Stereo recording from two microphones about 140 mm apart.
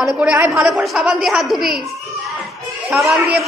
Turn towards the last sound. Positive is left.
turn(degrees=0)  # may be behind; listen again after turning